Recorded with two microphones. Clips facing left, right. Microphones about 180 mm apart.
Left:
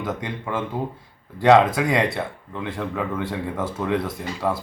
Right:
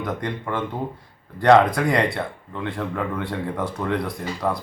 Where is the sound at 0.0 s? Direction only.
5° left (ahead or behind).